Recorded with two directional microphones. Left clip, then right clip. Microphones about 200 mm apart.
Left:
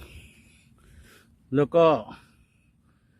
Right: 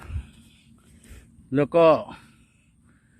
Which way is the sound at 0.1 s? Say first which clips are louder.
Right 2 dB; 25° left (ahead or behind).